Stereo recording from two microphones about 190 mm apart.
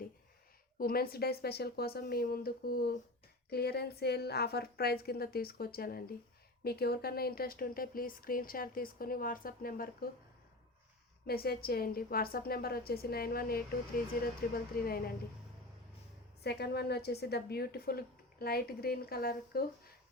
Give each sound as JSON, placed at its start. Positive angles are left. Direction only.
{"t": 0.8, "sound": "a woman's voice", "side_deg": 50}
{"t": 11.3, "sound": "speech", "side_deg": 55}
{"t": 16.4, "sound": "a woman's voice", "side_deg": 60}